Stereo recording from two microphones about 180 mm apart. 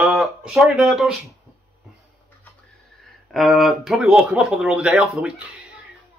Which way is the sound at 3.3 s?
Centre (ahead or behind).